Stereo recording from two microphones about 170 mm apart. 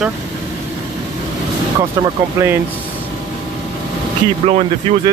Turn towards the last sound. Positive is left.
turn(degrees=-35)  # may be behind; listen again after turning